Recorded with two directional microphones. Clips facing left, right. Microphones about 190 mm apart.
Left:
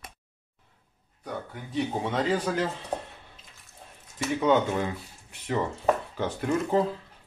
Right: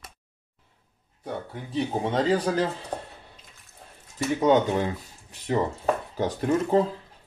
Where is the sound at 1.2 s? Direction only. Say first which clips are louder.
Right 2 dB; 25° right (ahead or behind).